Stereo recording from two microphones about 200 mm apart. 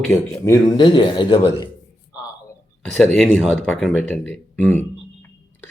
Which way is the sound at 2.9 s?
Centre (ahead or behind).